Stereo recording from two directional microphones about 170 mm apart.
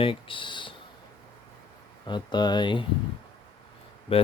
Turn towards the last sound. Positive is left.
turn(degrees=35)  # may be behind; listen again after turning